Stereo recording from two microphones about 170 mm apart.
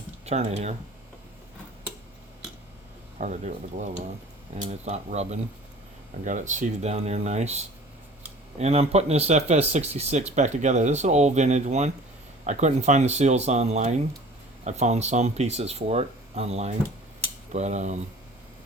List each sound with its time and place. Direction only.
0.3 s speech: 40° right (ahead or behind)
3.2 s speech: 45° right (ahead or behind)